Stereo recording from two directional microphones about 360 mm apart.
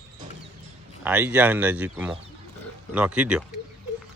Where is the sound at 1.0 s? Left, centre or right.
Centre.